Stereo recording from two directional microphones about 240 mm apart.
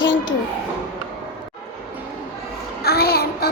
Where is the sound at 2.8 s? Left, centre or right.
Left.